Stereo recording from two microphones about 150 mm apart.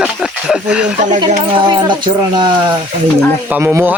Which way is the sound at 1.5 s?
30° right (ahead or behind).